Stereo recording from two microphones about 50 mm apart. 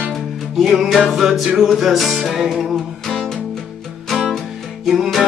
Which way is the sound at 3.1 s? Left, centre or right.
Centre.